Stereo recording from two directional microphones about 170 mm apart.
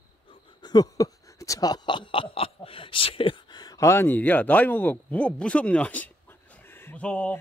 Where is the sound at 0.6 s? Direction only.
25° left (ahead or behind).